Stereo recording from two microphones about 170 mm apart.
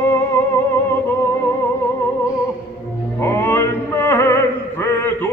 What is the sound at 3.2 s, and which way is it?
Opera, 15° left (ahead or behind).